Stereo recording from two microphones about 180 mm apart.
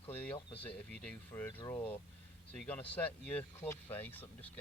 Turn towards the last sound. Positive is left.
turn(degrees=10)  # may be behind; listen again after turning